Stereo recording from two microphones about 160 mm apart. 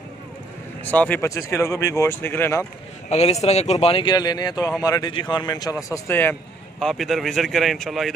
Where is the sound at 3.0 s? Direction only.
45° left (ahead or behind); by 6.3 s 15° left (ahead or behind).